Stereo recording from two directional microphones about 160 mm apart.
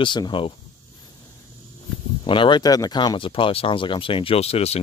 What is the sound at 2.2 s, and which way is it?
Speech, 30° left (ahead or behind).